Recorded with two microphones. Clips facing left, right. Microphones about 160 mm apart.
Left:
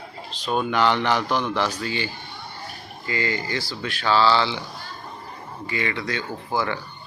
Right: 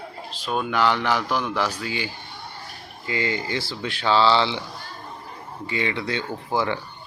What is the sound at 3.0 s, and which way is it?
Speech, 20° right (ahead or behind).